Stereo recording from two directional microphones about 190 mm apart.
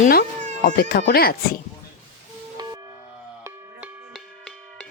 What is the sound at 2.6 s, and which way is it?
Music, 20° right (ahead or behind).